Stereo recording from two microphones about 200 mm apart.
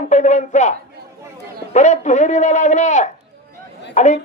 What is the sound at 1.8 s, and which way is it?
Speech, 35° left (ahead or behind).